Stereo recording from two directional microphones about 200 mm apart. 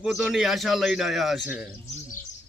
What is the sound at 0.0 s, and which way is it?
Speech, centre (ahead or behind).